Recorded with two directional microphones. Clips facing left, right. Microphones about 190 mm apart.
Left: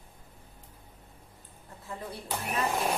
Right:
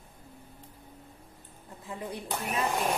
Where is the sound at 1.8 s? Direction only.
20° right (ahead or behind).